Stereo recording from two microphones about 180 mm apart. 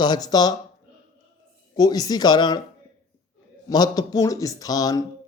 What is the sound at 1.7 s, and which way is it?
Speech, 20° left (ahead or behind).